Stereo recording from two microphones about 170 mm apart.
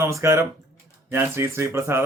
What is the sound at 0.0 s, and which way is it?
A man's voice, 15° right (ahead or behind).